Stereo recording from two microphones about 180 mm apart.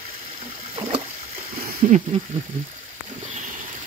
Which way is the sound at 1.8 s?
45° right (ahead or behind).